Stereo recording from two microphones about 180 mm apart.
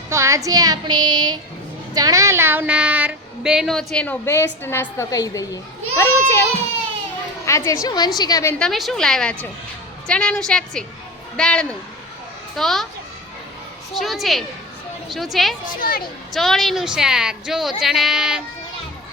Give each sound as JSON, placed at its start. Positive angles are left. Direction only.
{"t": 0.1, "sound": "a woman's voice", "side_deg": -15}
{"t": 7.4, "sound": "a woman's voice", "side_deg": 15}
{"t": 8.5, "sound": "speech", "side_deg": 0}
{"t": 14.0, "sound": "speech", "side_deg": 0}
{"t": 15.8, "sound": "a woman's voice", "side_deg": 55}
{"t": 16.3, "sound": "speech", "side_deg": 0}